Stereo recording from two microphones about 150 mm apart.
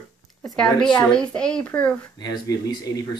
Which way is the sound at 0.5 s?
5° left (ahead or behind).